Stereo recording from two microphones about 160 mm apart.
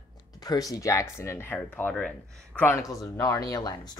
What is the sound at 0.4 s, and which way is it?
Speech, 25° left (ahead or behind).